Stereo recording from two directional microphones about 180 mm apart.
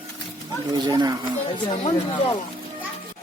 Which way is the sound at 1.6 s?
30° left (ahead or behind).